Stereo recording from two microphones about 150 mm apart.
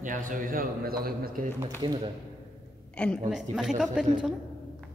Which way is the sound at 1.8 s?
30° right (ahead or behind).